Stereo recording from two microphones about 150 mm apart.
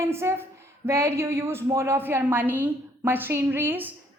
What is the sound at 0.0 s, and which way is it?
A woman's voice, 15° right (ahead or behind).